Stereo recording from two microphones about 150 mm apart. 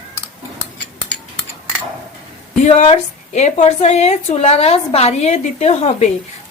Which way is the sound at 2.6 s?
45° left (ahead or behind).